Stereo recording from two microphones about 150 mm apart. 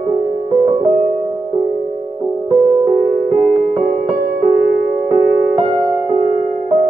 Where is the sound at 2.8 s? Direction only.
30° right (ahead or behind).